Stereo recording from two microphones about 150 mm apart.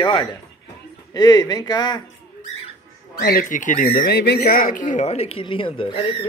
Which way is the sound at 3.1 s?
85° left.